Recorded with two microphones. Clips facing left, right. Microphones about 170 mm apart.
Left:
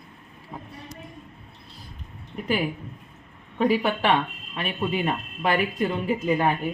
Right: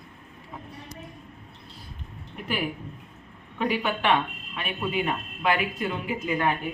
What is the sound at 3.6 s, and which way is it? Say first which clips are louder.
Speech: left 4 dB; 35° left (ahead or behind).